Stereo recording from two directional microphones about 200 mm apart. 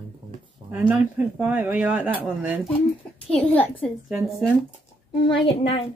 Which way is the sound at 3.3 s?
10° left (ahead or behind).